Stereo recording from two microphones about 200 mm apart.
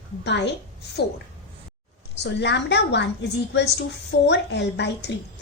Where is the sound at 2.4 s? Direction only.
60° left (ahead or behind).